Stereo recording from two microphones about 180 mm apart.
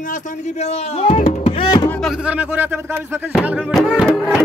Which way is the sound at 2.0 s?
5° right (ahead or behind).